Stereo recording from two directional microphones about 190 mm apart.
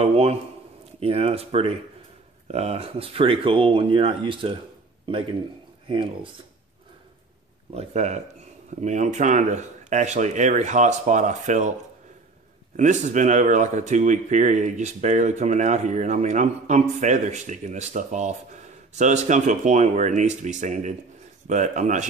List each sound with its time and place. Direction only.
0.0 s speech: 35° right (ahead or behind)
7.7 s speech: 35° right (ahead or behind)
12.7 s speech: 40° right (ahead or behind)